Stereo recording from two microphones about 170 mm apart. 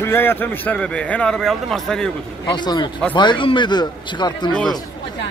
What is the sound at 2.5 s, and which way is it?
A man's voice, 25° left (ahead or behind).